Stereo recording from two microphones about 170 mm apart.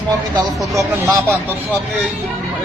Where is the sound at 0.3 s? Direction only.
15° right (ahead or behind).